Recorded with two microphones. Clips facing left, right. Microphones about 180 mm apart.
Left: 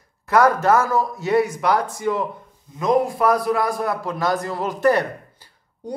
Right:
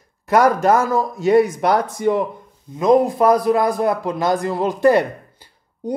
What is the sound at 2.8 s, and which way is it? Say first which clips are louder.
A man's voice: right 4 dB; 20° right (ahead or behind).